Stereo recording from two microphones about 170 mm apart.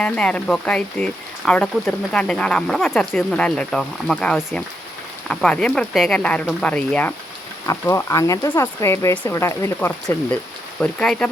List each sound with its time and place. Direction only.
0.0 s speech: 5° left (ahead or behind)
10.8 s speech: 5° left (ahead or behind)